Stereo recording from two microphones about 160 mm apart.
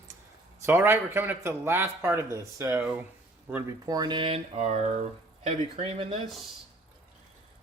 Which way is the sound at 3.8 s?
25° right (ahead or behind).